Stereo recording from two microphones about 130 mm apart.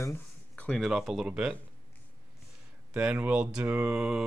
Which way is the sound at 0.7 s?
Centre (ahead or behind).